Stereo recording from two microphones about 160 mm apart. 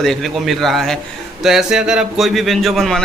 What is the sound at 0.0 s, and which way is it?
Speech, centre (ahead or behind).